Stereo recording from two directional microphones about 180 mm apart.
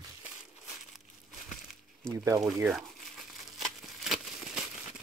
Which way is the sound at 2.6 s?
Centre (ahead or behind).